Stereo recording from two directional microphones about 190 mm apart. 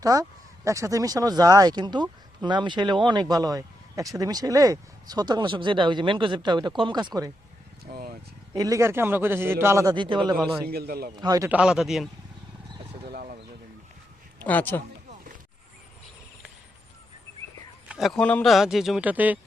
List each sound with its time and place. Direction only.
0.0 s speech: 15° right (ahead or behind)
7.9 s vehicle: 50° right (ahead or behind)
8.5 s a man's voice: 20° right (ahead or behind)
10.3 s speech: centre (ahead or behind)
10.7 s a man's voice: 55° right (ahead or behind)
11.2 s speech: 20° right (ahead or behind); by 12.0 s centre (ahead or behind)
13.1 s a sound: 55° right (ahead or behind)
14.4 s speech: 10° left (ahead or behind)
17.8 s speech: centre (ahead or behind)